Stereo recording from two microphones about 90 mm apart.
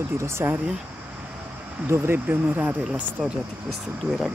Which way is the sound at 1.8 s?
25° right (ahead or behind).